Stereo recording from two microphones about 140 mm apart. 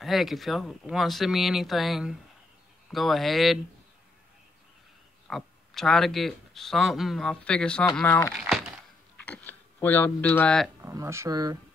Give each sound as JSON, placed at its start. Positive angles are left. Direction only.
{"t": 0.0, "sound": "speech", "side_deg": 0}
{"t": 5.3, "sound": "speech", "side_deg": 5}
{"t": 8.4, "sound": "a sound", "side_deg": 0}
{"t": 9.2, "sound": "speech", "side_deg": 10}
{"t": 10.8, "sound": "speech", "side_deg": -20}